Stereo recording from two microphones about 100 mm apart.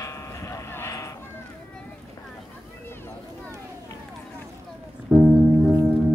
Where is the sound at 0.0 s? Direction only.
30° left (ahead or behind).